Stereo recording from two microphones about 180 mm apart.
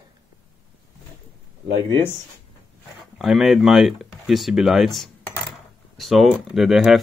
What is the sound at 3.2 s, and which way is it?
Speech, centre (ahead or behind).